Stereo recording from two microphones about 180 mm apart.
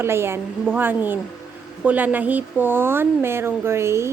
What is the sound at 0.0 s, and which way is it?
Speech, 15° right (ahead or behind).